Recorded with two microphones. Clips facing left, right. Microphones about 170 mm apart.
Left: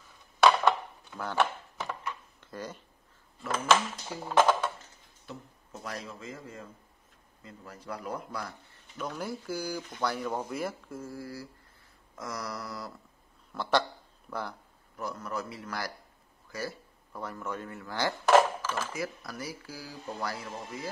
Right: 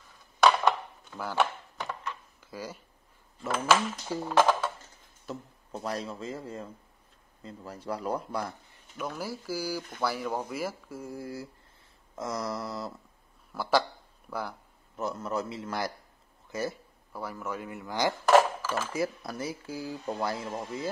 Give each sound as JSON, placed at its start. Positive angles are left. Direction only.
{"t": 1.1, "sound": "chop", "side_deg": 0}
{"t": 2.4, "sound": "speech", "side_deg": -10}
{"t": 5.2, "sound": "speech", "side_deg": -35}
{"t": 8.7, "sound": "speech", "side_deg": -10}
{"t": 13.5, "sound": "speech", "side_deg": -5}
{"t": 15.0, "sound": "speech", "side_deg": -25}
{"t": 16.4, "sound": "a sound", "side_deg": -20}
{"t": 17.1, "sound": "speech", "side_deg": -10}
{"t": 18.2, "sound": "a sound", "side_deg": 0}
{"t": 18.9, "sound": "speech", "side_deg": -25}